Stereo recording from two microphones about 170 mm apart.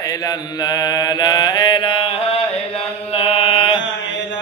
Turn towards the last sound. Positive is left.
turn(degrees=30)  # may be behind; listen again after turning